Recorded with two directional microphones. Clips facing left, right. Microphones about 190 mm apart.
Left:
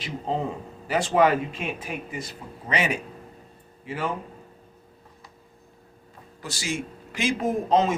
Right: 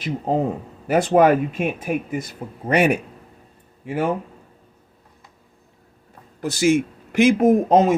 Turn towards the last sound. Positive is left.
turn(degrees=-50)  # may be behind; listen again after turning